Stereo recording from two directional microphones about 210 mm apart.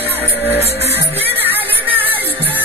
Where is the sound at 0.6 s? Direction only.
30° right (ahead or behind).